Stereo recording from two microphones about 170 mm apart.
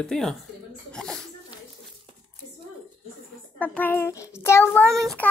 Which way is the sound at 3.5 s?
10° left (ahead or behind).